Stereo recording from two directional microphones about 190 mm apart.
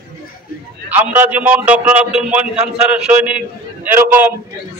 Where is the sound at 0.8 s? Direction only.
10° right (ahead or behind).